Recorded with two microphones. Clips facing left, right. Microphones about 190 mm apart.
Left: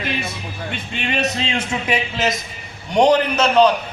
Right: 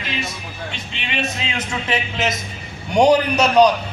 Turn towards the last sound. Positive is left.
turn(degrees=-15)  # may be behind; listen again after turning